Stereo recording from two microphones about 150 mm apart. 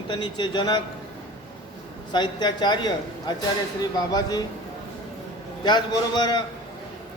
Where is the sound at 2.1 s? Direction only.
30° left (ahead or behind).